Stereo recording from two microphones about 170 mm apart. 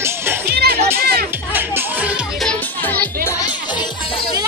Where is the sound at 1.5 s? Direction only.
10° right (ahead or behind).